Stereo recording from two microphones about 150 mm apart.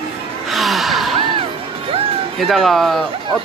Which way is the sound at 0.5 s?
Centre (ahead or behind).